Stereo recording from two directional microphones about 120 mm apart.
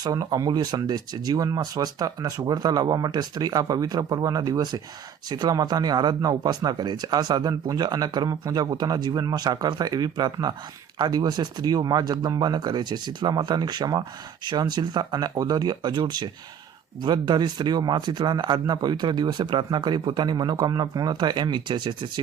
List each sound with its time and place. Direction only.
0.0 s speech: 30° right (ahead or behind)